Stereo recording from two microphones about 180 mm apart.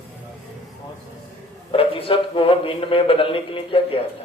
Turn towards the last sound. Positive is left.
turn(degrees=30)  # may be behind; listen again after turning